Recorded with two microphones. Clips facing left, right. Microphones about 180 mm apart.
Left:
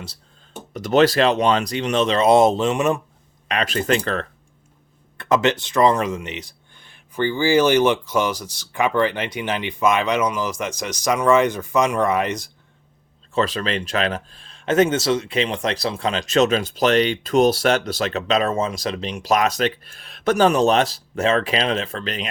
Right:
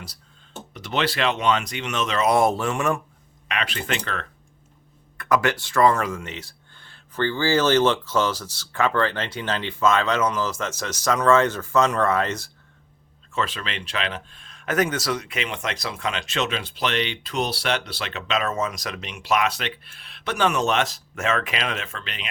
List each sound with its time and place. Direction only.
0.7 s speech: 45° left (ahead or behind); by 3.0 s 20° left (ahead or behind)
3.5 s speech: 40° left (ahead or behind); by 12.5 s 15° left (ahead or behind)
13.3 s speech: 40° left (ahead or behind)